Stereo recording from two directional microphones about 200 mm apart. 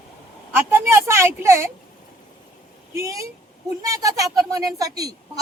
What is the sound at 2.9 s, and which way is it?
A woman's voice, 15° right (ahead or behind).